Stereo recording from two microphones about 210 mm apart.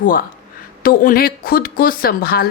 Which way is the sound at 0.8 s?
45° left (ahead or behind).